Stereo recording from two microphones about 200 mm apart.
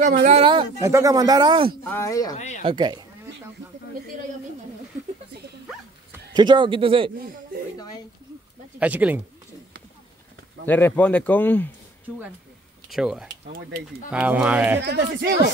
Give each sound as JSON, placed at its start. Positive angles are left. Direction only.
{"t": 0.0, "sound": "a man's voice", "side_deg": -35}
{"t": 1.9, "sound": "speech", "side_deg": 15}
{"t": 2.3, "sound": "speech", "side_deg": 35}
{"t": 2.6, "sound": "a man's voice", "side_deg": -20}
{"t": 6.3, "sound": "a man's voice", "side_deg": -20}
{"t": 8.7, "sound": "speech", "side_deg": -5}
{"t": 10.6, "sound": "speech", "side_deg": 10}
{"t": 12.1, "sound": "speech", "side_deg": -10}
{"t": 14.8, "sound": "speech", "side_deg": -60}